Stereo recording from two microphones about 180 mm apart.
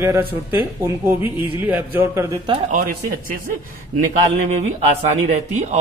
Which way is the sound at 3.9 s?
40° right (ahead or behind).